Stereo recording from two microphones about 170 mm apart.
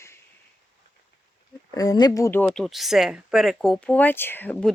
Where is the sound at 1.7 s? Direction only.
20° left (ahead or behind).